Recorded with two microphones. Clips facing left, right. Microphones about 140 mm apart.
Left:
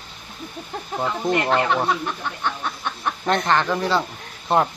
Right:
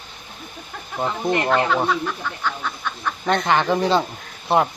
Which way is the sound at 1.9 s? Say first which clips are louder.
Right 1 dB; 25° left (ahead or behind).